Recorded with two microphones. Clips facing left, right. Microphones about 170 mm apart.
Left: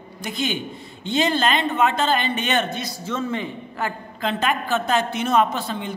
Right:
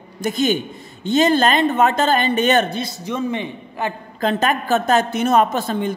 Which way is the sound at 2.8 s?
20° right (ahead or behind).